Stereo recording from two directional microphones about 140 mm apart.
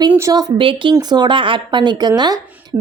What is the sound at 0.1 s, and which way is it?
Speech, 20° right (ahead or behind).